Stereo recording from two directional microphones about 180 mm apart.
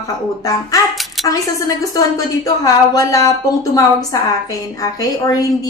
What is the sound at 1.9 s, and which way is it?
A woman's voice, 20° left (ahead or behind).